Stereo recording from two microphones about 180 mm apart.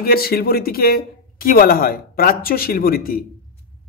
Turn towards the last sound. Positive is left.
turn(degrees=55)  # may be behind; listen again after turning